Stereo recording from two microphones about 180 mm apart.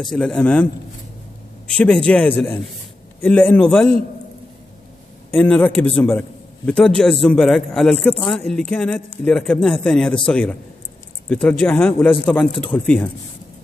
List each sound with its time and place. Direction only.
0.1 s a man's voice: 5° left (ahead or behind)
1.8 s a man's voice: 5° left (ahead or behind)
5.3 s a man's voice: 5° left (ahead or behind)